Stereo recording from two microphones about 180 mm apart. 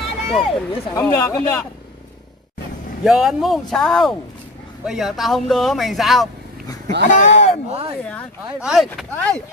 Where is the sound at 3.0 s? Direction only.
5° right (ahead or behind).